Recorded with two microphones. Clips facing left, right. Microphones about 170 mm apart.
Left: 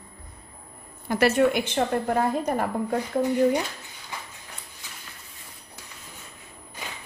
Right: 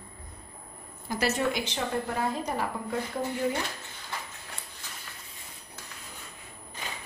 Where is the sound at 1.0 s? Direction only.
60° left (ahead or behind).